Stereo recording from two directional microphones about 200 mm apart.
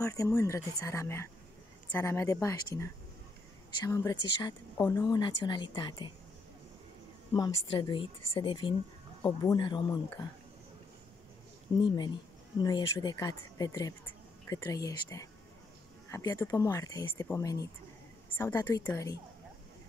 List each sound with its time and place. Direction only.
0.0 s a woman's voice: 15° left (ahead or behind)
7.3 s a woman's voice: 20° left (ahead or behind)
11.7 s a woman's voice: 20° left (ahead or behind)